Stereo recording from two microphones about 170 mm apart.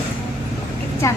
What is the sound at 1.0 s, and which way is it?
Speech, 20° left (ahead or behind).